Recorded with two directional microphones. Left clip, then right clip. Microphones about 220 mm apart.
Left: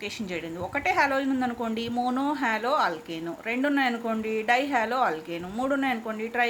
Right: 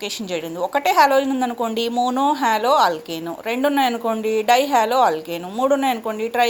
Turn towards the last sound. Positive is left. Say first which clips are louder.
# right 8 dB
turn(degrees=-20)  # may be behind; listen again after turning